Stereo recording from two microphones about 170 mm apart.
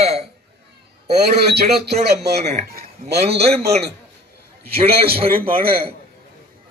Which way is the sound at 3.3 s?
35° right (ahead or behind).